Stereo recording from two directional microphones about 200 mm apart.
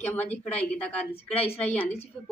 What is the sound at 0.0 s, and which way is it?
A woman's voice, 10° left (ahead or behind).